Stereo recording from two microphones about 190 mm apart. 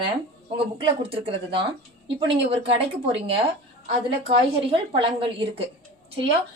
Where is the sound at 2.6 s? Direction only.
30° right (ahead or behind).